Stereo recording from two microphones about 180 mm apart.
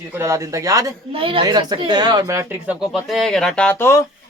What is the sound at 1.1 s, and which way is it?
Speech, 30° right (ahead or behind).